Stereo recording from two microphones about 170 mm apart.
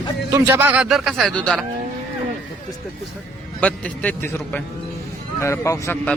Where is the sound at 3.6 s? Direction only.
10° left (ahead or behind).